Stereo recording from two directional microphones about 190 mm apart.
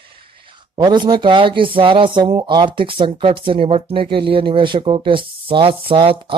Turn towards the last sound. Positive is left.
turn(degrees=-25)  # may be behind; listen again after turning